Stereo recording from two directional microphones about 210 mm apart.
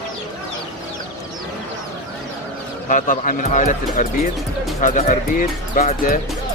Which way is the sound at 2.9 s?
40° left (ahead or behind).